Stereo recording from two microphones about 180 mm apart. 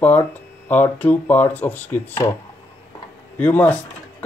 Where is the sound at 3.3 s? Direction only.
10° left (ahead or behind).